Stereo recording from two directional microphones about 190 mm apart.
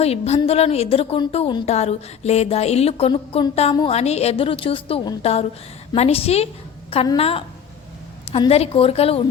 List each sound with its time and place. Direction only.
0.0 s a woman's voice: 30° left (ahead or behind)